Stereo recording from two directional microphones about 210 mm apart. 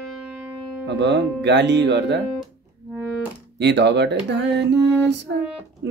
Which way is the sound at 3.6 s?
55° right (ahead or behind).